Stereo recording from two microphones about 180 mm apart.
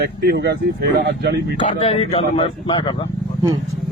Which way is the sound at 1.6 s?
35° left (ahead or behind).